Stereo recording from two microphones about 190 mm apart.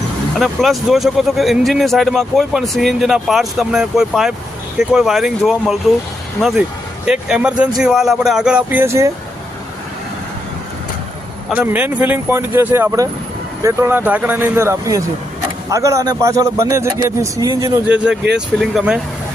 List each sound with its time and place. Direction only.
0.3 s speech: centre (ahead or behind)
7.0 s speech: 5° right (ahead or behind)
11.4 s a man's voice: 10° right (ahead or behind)
17.8 s speech: 5° right (ahead or behind)